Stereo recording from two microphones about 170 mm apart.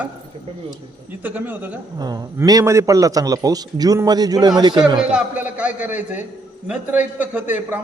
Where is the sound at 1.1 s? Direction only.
10° right (ahead or behind).